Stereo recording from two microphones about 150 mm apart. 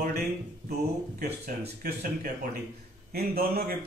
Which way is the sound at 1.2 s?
90° right.